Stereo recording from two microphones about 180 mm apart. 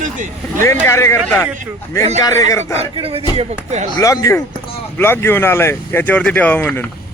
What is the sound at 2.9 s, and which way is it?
Speech, 30° right (ahead or behind).